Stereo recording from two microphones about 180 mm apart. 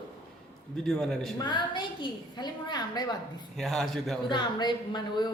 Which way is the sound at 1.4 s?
25° left (ahead or behind).